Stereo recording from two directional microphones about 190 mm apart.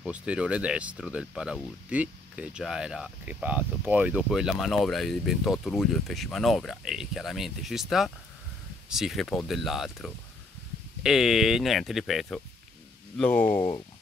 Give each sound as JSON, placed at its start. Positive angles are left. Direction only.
{"t": 0.0, "sound": "speech", "side_deg": -5}
{"t": 13.6, "sound": "speech", "side_deg": 25}